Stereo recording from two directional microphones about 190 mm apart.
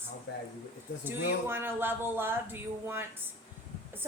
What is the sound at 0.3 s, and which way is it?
Speech, 70° left (ahead or behind).